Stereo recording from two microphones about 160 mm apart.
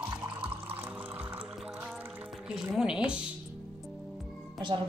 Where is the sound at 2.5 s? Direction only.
5° right (ahead or behind).